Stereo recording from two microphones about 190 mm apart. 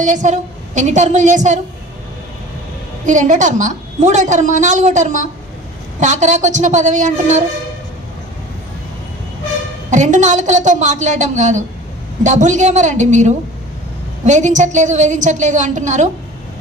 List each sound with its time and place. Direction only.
0.0 s a woman's voice: 40° right (ahead or behind)
3.1 s a woman's voice: 40° right (ahead or behind)
9.8 s a woman's voice: 40° right (ahead or behind)